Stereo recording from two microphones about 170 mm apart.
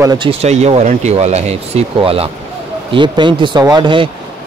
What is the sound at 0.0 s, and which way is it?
Speech, 20° right (ahead or behind).